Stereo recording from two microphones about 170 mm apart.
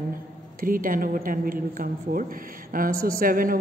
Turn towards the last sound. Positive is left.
turn(degrees=-55)  # may be behind; listen again after turning